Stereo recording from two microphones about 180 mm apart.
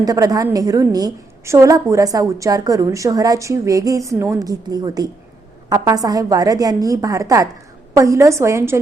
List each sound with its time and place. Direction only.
0.0 s a woman's voice: 20° right (ahead or behind)